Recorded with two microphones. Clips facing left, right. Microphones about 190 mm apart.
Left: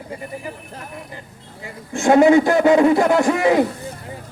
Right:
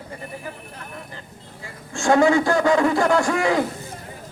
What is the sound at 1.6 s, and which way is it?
A man's voice, 20° left (ahead or behind).